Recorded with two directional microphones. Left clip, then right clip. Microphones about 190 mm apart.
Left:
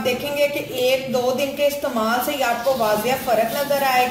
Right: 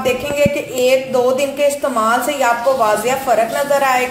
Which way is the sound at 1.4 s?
15° right (ahead or behind).